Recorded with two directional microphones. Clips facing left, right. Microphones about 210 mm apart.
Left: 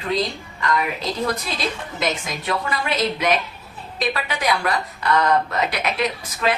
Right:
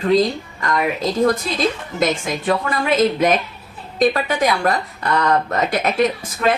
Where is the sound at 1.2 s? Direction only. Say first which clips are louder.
Right 8 dB; 50° right (ahead or behind).